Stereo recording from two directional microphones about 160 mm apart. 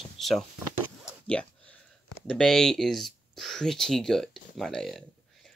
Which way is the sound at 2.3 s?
5° left (ahead or behind).